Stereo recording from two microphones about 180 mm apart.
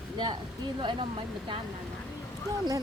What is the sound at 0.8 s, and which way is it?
Speech, 25° right (ahead or behind).